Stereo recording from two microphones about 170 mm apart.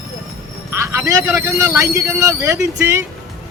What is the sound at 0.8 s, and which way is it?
Speech, 15° right (ahead or behind).